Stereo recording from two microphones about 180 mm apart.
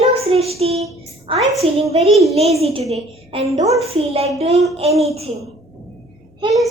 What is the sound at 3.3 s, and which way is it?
A woman's voice, 35° right (ahead or behind).